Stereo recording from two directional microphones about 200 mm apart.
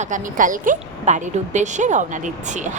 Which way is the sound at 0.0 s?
40° right (ahead or behind).